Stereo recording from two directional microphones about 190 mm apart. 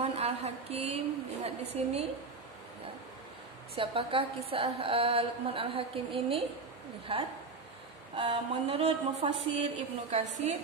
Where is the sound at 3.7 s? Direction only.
30° right (ahead or behind).